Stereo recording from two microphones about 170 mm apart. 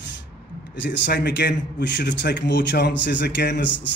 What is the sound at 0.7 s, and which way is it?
A man's voice, 90° left.